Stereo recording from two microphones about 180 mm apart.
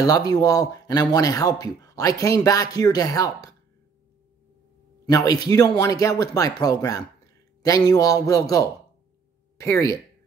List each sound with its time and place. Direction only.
0.0 s speech: 20° left (ahead or behind)
5.0 s speech: 20° left (ahead or behind)